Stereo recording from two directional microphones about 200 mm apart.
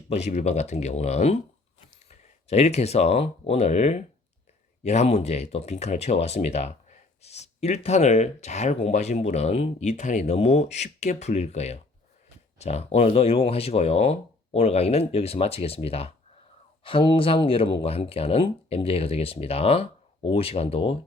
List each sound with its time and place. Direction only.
0.1 s speech: 35° left (ahead or behind)